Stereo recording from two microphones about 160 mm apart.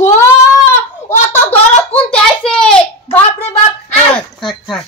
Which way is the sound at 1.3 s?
10° left (ahead or behind).